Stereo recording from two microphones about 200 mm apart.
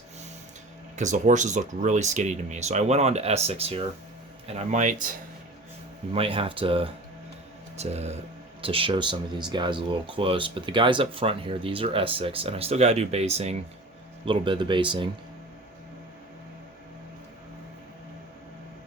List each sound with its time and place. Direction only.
0.9 s speech: 40° right (ahead or behind)
6.1 s speech: 25° right (ahead or behind)